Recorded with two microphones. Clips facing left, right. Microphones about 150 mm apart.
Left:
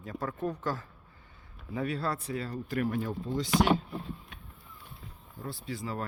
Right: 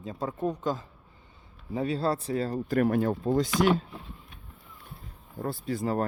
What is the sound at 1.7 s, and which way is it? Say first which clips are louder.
Speech: right 5 dB; 25° right (ahead or behind).